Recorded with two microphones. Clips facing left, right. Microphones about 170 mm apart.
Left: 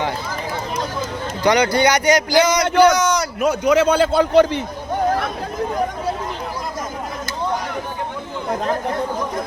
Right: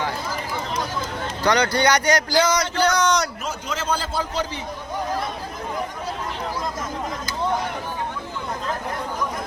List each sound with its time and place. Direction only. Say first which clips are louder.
1.5 s speech: left 4 dB; 10° left (ahead or behind)
3.4 s a man's voice: left 13 dB; 65° left (ahead or behind)